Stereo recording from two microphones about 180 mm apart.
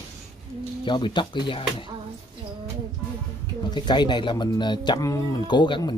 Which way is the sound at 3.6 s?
25° left (ahead or behind).